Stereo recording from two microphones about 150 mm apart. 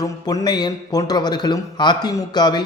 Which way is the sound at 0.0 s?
25° left (ahead or behind).